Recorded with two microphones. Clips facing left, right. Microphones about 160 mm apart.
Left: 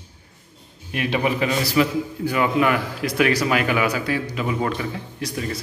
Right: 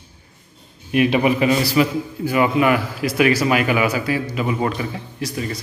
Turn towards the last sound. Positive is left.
turn(degrees=-5)  # may be behind; listen again after turning